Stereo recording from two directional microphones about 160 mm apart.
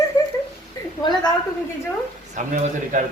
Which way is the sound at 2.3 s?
50° right (ahead or behind).